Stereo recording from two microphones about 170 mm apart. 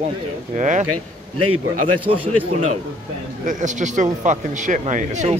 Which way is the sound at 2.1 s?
40° right (ahead or behind).